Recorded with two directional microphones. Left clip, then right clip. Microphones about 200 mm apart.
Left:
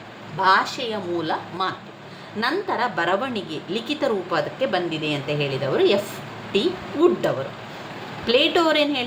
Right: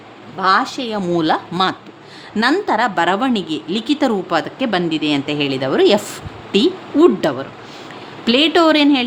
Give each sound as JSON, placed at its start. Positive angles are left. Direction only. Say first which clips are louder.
{"t": 0.4, "sound": "a woman's voice", "louder": "right 3 dB", "side_deg": -40}